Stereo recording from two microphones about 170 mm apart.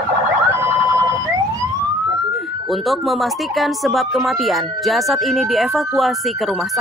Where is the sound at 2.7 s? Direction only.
Centre (ahead or behind).